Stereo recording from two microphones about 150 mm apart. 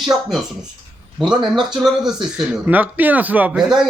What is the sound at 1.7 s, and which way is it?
Speech, centre (ahead or behind).